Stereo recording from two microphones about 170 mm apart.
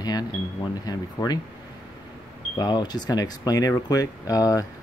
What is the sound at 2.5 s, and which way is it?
Speech, 25° left (ahead or behind).